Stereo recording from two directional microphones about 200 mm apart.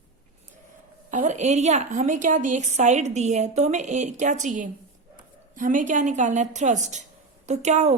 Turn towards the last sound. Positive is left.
turn(degrees=-35)  # may be behind; listen again after turning